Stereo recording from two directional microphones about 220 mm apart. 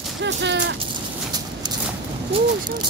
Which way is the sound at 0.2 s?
50° right (ahead or behind).